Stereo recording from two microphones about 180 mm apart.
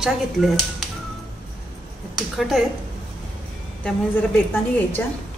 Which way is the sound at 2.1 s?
Centre (ahead or behind).